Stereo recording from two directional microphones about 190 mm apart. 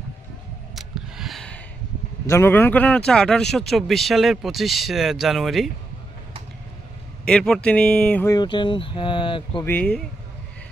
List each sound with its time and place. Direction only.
0.7 s a sound: centre (ahead or behind)
2.2 s a man's voice: 15° left (ahead or behind)
7.2 s speech: 5° left (ahead or behind)
8.3 s speech: 25° left (ahead or behind)
9.7 s speech: 5° left (ahead or behind)